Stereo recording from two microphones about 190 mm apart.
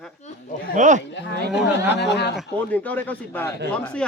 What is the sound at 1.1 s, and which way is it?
A woman's voice, 70° left (ahead or behind).